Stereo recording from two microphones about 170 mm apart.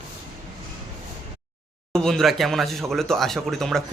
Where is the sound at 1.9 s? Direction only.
5° left (ahead or behind).